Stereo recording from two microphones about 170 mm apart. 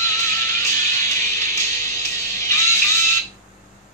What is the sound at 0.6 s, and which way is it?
Music, 15° left (ahead or behind).